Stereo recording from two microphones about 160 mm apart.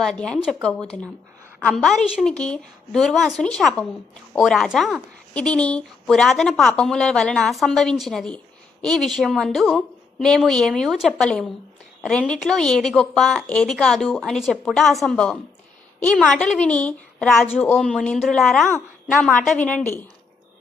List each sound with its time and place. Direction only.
0.0 s a woman's voice: 5° left (ahead or behind)